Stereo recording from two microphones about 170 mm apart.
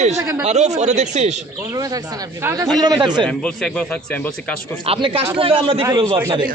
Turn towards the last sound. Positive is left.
turn(degrees=-25)  # may be behind; listen again after turning